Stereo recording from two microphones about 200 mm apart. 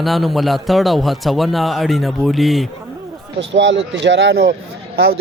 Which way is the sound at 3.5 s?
65° right (ahead or behind).